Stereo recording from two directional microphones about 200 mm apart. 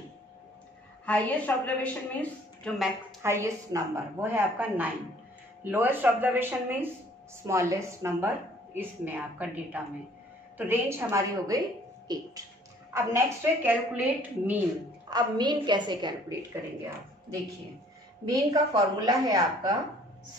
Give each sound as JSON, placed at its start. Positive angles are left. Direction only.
{"t": 1.0, "sound": "a woman's voice", "side_deg": 5}
{"t": 3.2, "sound": "a woman's voice", "side_deg": -15}
{"t": 15.0, "sound": "a woman's voice", "side_deg": -20}
{"t": 18.5, "sound": "a woman's voice", "side_deg": -20}